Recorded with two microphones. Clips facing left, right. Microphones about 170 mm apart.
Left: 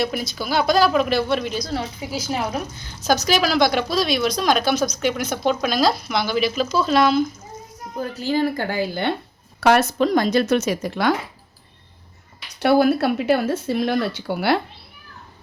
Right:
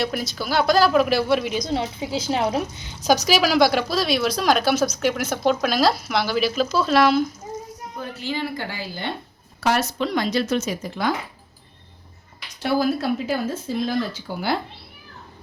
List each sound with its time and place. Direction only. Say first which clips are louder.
0.0 s a woman's voice: left 1 dB; centre (ahead or behind)
1.5 s a woman's voice: right 2 dB; 20° right (ahead or behind); by 7.3 s centre (ahead or behind)
7.9 s a woman's voice: left 7 dB; 40° left (ahead or behind); by 11.1 s 70° left (ahead or behind)
12.5 s speech: left 5 dB; 65° left (ahead or behind)